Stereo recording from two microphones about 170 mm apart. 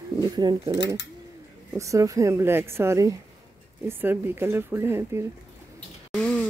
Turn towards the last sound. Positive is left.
turn(degrees=5)  # may be behind; listen again after turning